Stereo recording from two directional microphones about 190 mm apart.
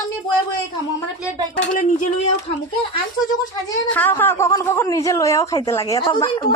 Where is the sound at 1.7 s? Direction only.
40° left (ahead or behind).